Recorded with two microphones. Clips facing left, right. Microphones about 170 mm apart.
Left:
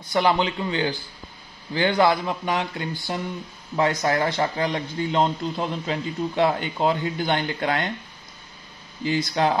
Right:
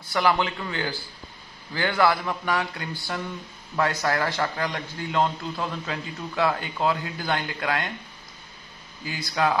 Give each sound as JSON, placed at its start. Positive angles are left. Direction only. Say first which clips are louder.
{"t": 0.1, "sound": "a man's voice", "louder": "left 2 dB", "side_deg": 20}
{"t": 9.0, "sound": "a man's voice", "louder": "left 4 dB", "side_deg": 20}